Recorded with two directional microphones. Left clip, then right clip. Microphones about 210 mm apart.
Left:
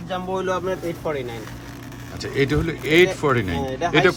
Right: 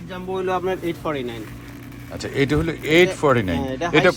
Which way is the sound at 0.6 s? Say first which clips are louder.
Right 1 dB; 40° right (ahead or behind).